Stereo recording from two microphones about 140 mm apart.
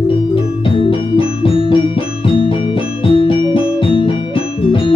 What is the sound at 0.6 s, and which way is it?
Music, 40° left (ahead or behind).